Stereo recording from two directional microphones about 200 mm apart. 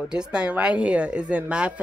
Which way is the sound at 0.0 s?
5° right (ahead or behind).